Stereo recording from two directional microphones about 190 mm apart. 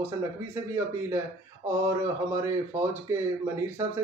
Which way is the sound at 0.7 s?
15° right (ahead or behind).